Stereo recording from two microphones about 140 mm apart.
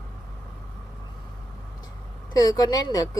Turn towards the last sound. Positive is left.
turn(degrees=30)  # may be behind; listen again after turning